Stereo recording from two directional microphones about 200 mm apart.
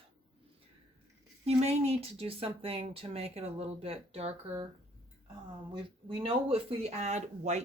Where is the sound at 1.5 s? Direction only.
30° right (ahead or behind).